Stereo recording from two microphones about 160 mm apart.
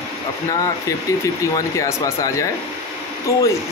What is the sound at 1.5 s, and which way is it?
Speech, 20° left (ahead or behind).